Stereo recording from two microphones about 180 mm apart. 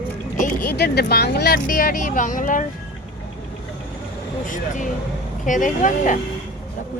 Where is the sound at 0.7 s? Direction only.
65° left (ahead or behind); by 2.7 s 45° left (ahead or behind).